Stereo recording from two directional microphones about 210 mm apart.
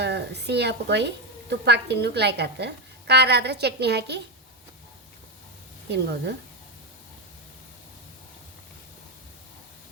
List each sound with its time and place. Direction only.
0.0 s a woman's voice: 50° right (ahead or behind)
5.9 s a woman's voice: 50° right (ahead or behind)